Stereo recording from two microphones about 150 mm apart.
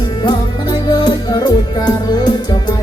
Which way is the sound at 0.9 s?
30° left (ahead or behind).